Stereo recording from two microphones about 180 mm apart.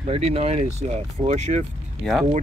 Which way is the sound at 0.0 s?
35° right (ahead or behind).